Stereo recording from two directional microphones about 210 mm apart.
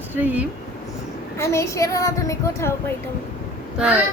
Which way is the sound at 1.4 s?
15° left (ahead or behind).